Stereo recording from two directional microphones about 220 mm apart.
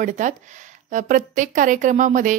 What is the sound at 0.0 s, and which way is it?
Speech, 35° right (ahead or behind).